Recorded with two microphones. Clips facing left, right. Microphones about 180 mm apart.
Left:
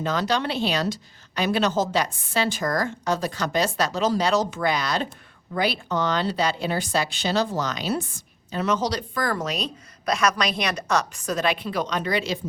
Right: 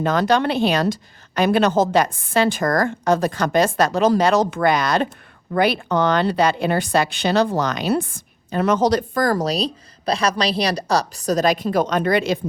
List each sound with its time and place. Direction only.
0.0 s speech: 55° right (ahead or behind)